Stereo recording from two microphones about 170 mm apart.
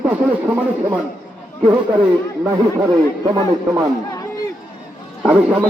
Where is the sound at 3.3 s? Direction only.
25° right (ahead or behind).